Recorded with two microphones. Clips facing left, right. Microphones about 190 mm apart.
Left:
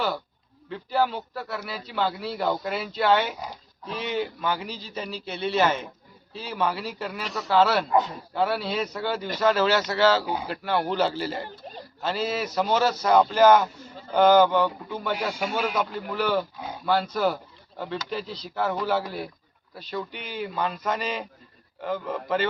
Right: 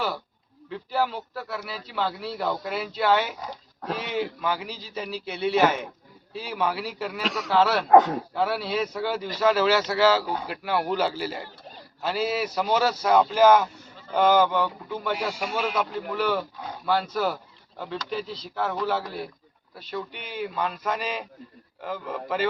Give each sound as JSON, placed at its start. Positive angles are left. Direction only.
{"t": 0.7, "sound": "a man's voice", "side_deg": 0}
{"t": 7.2, "sound": "speech", "side_deg": -85}
{"t": 7.5, "sound": "a man's voice", "side_deg": 0}
{"t": 7.9, "sound": "speech", "side_deg": -75}
{"t": 8.4, "sound": "a man's voice", "side_deg": -5}